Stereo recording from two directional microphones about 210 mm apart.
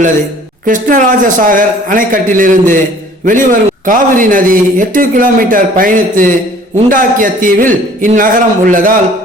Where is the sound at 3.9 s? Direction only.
40° right (ahead or behind).